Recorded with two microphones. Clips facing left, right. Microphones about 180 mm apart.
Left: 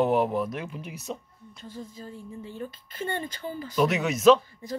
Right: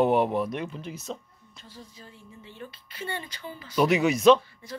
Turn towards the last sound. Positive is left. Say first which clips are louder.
# right 1 dB
turn(degrees=5)  # may be behind; listen again after turning